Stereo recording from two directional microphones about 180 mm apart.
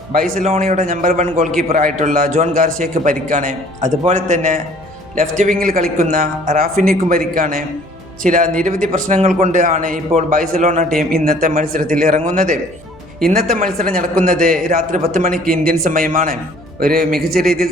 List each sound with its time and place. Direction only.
0.1 s a man's voice: 45° right (ahead or behind)
11.1 s a man's voice: 55° right (ahead or behind)